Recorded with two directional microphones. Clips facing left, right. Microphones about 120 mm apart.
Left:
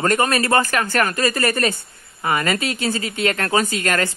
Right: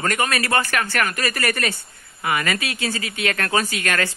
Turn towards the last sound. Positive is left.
turn(degrees=25)  # may be behind; listen again after turning